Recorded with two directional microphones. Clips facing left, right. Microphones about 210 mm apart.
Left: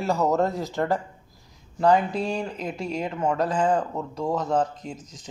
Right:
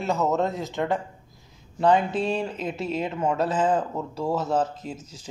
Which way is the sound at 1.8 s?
25° right (ahead or behind).